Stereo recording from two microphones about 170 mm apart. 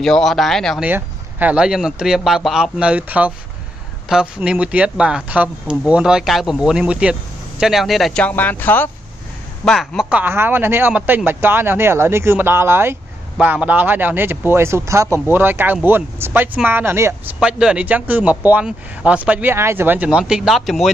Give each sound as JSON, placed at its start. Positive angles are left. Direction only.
{"t": 0.0, "sound": "a man's voice", "side_deg": 0}
{"t": 0.8, "sound": "a man's voice", "side_deg": -10}
{"t": 9.7, "sound": "a man's voice", "side_deg": 0}